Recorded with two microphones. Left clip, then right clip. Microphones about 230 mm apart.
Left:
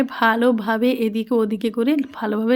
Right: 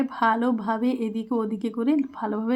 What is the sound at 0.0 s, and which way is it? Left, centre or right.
Speech, left.